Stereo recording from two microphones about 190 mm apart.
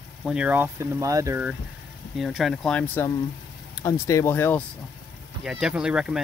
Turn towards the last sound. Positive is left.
turn(degrees=-5)  # may be behind; listen again after turning